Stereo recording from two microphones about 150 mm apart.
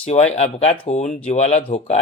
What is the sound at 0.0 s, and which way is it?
Speech, 45° left (ahead or behind).